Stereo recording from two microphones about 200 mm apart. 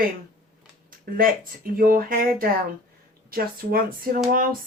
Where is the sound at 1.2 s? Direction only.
45° right (ahead or behind).